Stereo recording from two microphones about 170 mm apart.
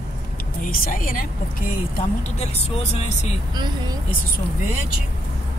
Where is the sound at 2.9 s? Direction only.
40° left (ahead or behind).